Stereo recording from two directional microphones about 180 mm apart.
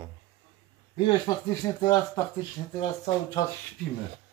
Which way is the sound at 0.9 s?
25° left (ahead or behind).